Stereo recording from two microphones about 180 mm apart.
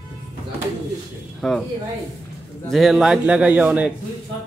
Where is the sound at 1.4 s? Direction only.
Centre (ahead or behind).